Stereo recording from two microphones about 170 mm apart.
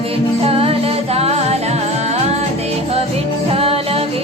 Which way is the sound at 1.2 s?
35° right (ahead or behind).